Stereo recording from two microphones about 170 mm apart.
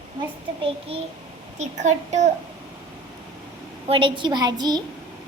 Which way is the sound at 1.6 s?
45° right (ahead or behind).